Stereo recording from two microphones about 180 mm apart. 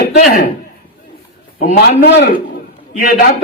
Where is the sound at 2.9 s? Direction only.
45° left (ahead or behind).